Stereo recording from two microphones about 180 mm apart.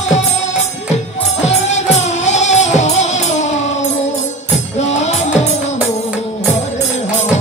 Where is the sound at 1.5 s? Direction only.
40° left (ahead or behind).